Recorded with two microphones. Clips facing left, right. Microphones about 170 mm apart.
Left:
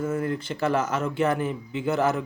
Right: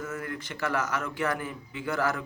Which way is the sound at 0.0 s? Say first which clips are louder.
Left 9 dB; 30° left (ahead or behind).